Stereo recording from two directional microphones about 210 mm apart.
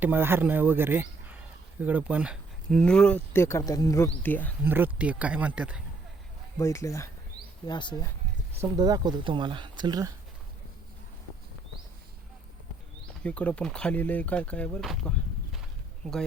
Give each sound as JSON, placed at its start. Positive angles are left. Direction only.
{"t": 0.0, "sound": "speech", "side_deg": -10}
{"t": 4.6, "sound": "speech", "side_deg": -10}
{"t": 6.6, "sound": "speech", "side_deg": 15}
{"t": 8.7, "sound": "speech", "side_deg": -20}
{"t": 13.2, "sound": "speech", "side_deg": 5}